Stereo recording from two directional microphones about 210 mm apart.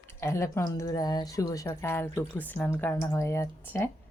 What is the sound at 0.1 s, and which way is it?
Speech, 10° left (ahead or behind).